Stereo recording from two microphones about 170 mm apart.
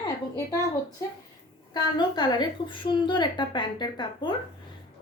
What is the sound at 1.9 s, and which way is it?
A woman's voice, 25° left (ahead or behind).